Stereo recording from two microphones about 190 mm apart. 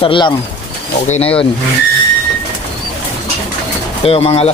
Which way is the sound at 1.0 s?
35° left (ahead or behind).